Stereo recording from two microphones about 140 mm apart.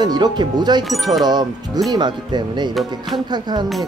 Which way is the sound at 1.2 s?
30° right (ahead or behind).